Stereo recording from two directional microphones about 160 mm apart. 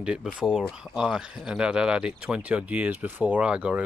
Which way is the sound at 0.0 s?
5° right (ahead or behind).